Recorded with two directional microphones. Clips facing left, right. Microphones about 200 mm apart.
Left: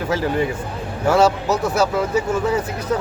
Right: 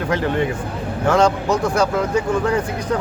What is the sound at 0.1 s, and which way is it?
Speech, 5° left (ahead or behind).